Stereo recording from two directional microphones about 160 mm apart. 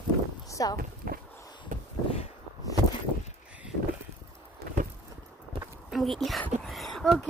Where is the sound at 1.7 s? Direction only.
55° right (ahead or behind).